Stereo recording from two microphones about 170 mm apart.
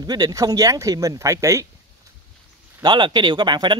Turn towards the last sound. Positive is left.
turn(degrees=-25)  # may be behind; listen again after turning